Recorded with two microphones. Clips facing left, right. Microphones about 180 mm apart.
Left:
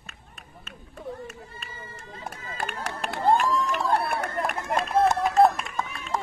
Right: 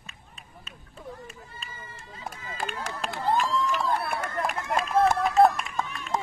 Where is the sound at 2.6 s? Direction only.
60° left (ahead or behind).